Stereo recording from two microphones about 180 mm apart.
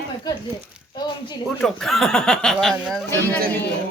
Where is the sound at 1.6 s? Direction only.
Centre (ahead or behind).